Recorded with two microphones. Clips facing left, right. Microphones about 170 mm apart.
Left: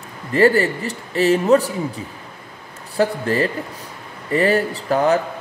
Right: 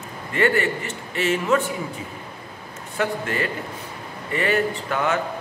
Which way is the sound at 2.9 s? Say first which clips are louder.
Left 6 dB; 35° left (ahead or behind).